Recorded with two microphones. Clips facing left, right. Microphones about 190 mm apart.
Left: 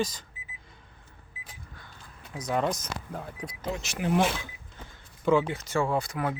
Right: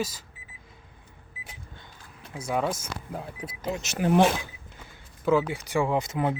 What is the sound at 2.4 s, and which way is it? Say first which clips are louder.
Speech: even; 5° right (ahead or behind).